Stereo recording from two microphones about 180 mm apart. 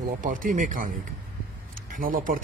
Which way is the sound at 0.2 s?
50° right (ahead or behind).